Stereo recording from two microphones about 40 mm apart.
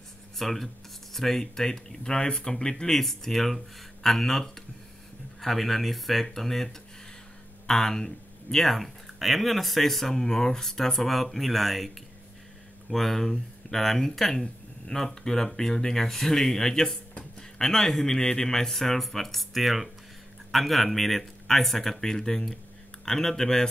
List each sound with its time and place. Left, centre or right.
0.4 s speech: centre
12.9 s speech: centre